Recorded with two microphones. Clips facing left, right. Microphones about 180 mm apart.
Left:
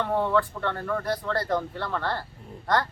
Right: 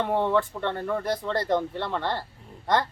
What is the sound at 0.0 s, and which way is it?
Speech, 20° right (ahead or behind).